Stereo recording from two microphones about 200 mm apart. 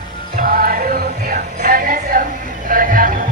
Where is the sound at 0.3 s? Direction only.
45° right (ahead or behind).